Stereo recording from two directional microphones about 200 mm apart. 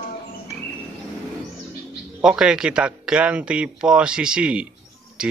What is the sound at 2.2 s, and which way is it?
Speech, 5° right (ahead or behind).